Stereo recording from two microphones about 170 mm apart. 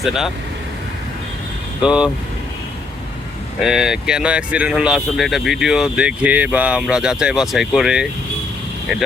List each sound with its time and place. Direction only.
1.8 s speech: 5° right (ahead or behind)
3.6 s speech: 5° right (ahead or behind)